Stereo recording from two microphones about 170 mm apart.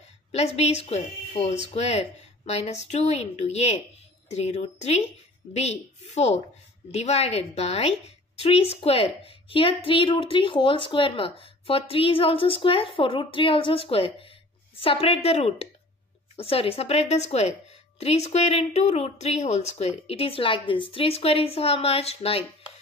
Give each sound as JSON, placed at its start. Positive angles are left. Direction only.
{"t": 0.3, "sound": "a woman's voice", "side_deg": 40}